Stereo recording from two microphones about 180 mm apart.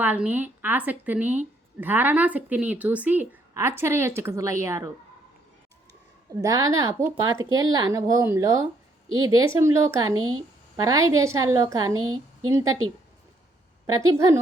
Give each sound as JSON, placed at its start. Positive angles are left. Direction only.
{"t": 0.0, "sound": "speech", "side_deg": -10}
{"t": 6.3, "sound": "speech", "side_deg": -20}
{"t": 13.8, "sound": "speech", "side_deg": -20}